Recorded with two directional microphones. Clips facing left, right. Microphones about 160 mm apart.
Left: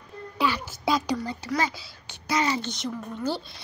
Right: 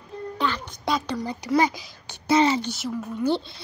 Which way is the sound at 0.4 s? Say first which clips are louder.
Left 2 dB; 5° left (ahead or behind).